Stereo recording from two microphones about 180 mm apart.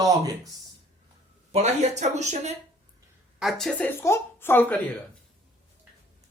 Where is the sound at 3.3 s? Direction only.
Centre (ahead or behind).